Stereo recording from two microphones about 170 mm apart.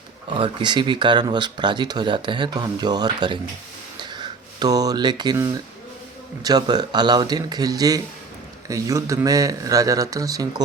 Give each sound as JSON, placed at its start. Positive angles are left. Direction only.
{"t": 0.3, "sound": "speech", "side_deg": -30}
{"t": 4.0, "sound": "a sound", "side_deg": -25}
{"t": 6.4, "sound": "speech", "side_deg": -25}